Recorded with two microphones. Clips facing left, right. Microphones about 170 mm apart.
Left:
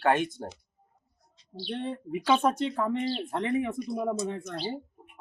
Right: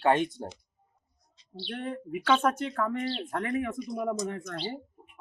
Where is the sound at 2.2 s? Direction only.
10° left (ahead or behind).